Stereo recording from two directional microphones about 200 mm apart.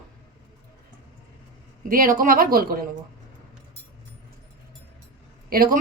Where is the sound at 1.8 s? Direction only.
45° right (ahead or behind).